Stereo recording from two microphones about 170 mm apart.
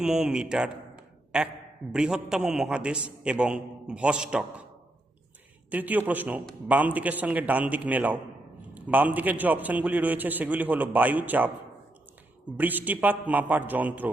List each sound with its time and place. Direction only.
0.0 s a man's voice: 5° right (ahead or behind)
5.7 s a man's voice: 10° right (ahead or behind)
12.5 s a man's voice: 10° right (ahead or behind)